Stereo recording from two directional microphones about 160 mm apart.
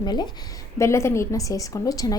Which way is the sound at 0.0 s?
25° left (ahead or behind).